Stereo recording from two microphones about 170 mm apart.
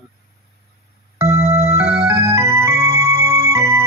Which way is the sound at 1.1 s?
15° right (ahead or behind).